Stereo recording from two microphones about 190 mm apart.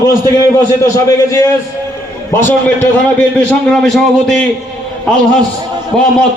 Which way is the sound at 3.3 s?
5° left (ahead or behind).